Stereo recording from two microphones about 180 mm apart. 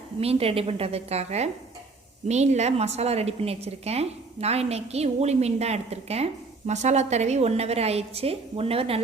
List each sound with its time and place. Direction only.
0.2 s a woman's voice: 35° right (ahead or behind)